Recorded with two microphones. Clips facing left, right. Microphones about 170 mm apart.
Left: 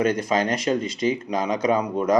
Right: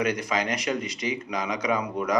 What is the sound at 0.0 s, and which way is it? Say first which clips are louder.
Speech: left 5 dB; 30° left (ahead or behind).